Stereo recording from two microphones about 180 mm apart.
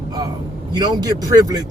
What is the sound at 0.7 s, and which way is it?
Speech, 25° right (ahead or behind).